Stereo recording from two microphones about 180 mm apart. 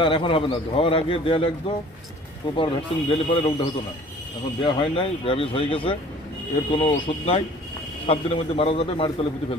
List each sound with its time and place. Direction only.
0.0 s a man's voice: 30° left (ahead or behind)
2.5 s a man's voice: 30° left (ahead or behind)